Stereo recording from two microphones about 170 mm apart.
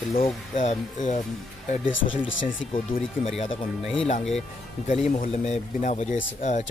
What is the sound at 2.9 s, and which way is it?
Speech, 60° left (ahead or behind).